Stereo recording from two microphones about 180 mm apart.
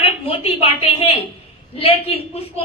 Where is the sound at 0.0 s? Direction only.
30° left (ahead or behind).